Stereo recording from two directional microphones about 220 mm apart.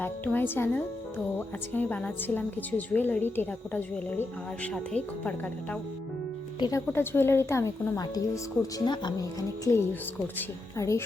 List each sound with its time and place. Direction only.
0.0 s a woman's voice: 10° left (ahead or behind)
6.6 s a woman's voice: 15° left (ahead or behind)